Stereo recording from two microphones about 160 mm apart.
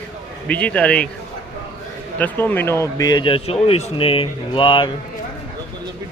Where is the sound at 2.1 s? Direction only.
10° left (ahead or behind); by 4.9 s 30° left (ahead or behind).